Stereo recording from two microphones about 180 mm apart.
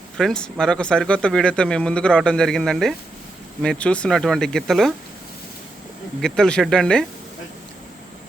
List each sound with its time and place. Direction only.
0.2 s speech: 5° left (ahead or behind)
6.2 s speech: 5° left (ahead or behind)